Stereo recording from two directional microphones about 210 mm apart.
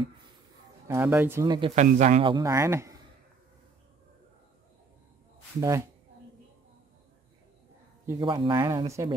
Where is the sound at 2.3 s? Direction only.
15° right (ahead or behind).